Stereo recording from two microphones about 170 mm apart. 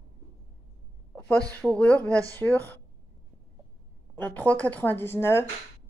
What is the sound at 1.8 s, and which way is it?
Speech, 5° left (ahead or behind).